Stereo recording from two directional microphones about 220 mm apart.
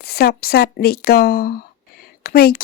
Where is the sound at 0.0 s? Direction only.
45° left (ahead or behind).